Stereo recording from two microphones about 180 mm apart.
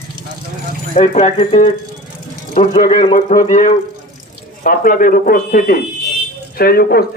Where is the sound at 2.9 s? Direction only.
35° left (ahead or behind).